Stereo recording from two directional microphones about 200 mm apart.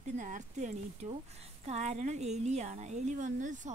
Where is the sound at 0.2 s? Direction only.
40° right (ahead or behind).